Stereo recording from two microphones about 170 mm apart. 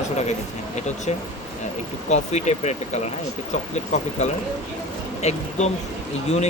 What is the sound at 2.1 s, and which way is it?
Speech, 40° left (ahead or behind).